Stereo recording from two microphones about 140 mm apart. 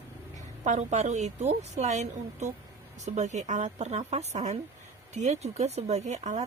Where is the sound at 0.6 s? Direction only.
55° right (ahead or behind).